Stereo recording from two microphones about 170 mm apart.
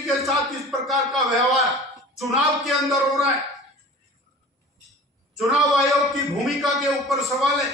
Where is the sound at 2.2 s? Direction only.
Centre (ahead or behind).